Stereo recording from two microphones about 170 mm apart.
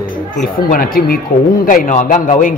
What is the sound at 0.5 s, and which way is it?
A man's voice, 55° left (ahead or behind).